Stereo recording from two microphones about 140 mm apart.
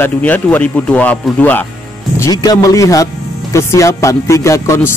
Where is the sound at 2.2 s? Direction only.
30° left (ahead or behind).